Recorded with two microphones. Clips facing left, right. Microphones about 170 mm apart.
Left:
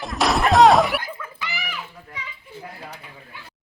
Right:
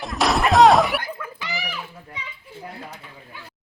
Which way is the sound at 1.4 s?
30° right (ahead or behind).